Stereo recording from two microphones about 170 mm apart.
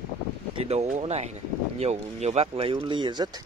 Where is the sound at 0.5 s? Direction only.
40° right (ahead or behind).